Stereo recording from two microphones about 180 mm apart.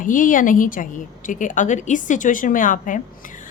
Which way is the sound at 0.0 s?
45° left (ahead or behind).